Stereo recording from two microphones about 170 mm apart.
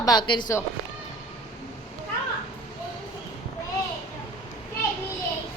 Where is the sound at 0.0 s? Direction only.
25° left (ahead or behind).